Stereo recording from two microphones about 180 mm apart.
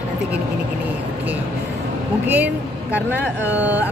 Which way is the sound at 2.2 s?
10° right (ahead or behind).